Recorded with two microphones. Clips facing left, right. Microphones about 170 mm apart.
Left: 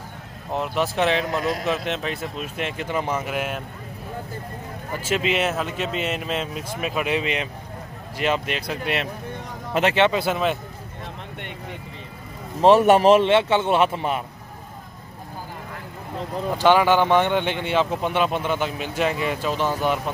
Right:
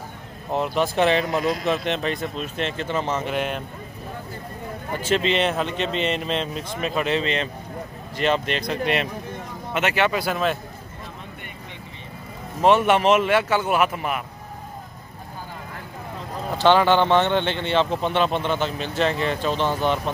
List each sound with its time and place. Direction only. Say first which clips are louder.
0.5 s speech: right 2 dB; centre (ahead or behind)
5.0 s speech: right 2 dB; 5° left (ahead or behind)
9.8 s speech: left 3 dB; 25° left (ahead or behind)
12.6 s speech: left 3 dB; 35° left (ahead or behind)
16.5 s speech: even; 10° left (ahead or behind)